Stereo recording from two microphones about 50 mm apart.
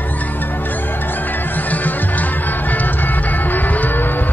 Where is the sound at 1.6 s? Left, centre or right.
Left.